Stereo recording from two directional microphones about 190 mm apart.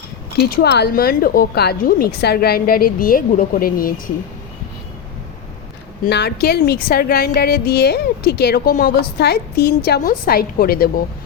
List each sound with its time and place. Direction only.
0.3 s a woman's voice: 55° left (ahead or behind)
6.1 s a woman's voice: 60° left (ahead or behind)